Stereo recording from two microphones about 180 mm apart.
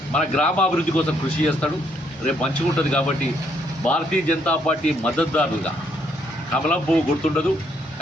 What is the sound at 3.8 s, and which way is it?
A man's voice, 5° left (ahead or behind).